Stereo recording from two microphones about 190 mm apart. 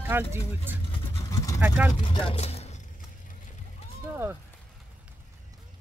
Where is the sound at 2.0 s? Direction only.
25° left (ahead or behind).